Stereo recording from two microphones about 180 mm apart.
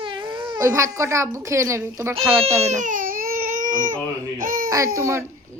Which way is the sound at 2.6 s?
40° right (ahead or behind).